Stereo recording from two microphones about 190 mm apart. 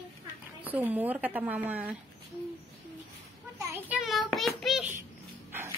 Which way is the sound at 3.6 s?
15° right (ahead or behind).